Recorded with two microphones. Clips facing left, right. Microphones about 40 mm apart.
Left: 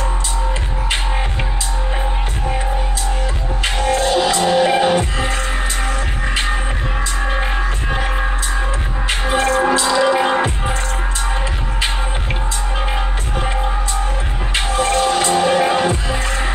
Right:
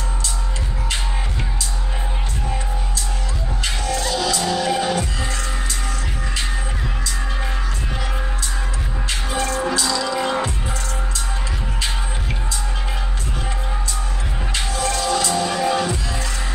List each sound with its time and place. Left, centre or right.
3.6 s music: left
9.3 s music: left
14.5 s music: left